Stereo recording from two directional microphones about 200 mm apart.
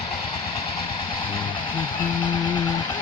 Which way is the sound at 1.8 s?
20° left (ahead or behind).